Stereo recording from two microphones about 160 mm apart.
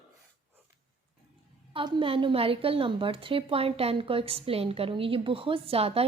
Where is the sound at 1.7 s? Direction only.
35° right (ahead or behind).